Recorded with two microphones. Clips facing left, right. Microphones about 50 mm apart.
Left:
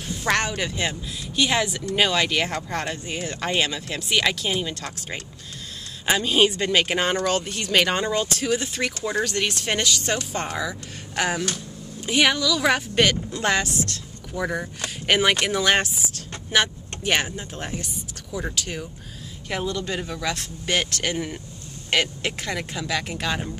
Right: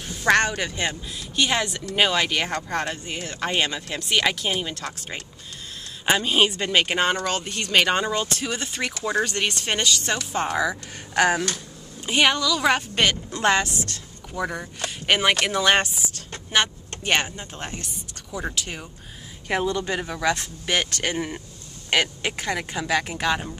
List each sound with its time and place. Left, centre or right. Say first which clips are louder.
0.1 s speech: right 4 dB; centre
10.6 s speech: right 4 dB; centre
19.5 s speech: right 3 dB; right